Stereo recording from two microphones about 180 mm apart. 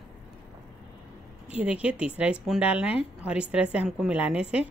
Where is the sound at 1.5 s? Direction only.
5° right (ahead or behind).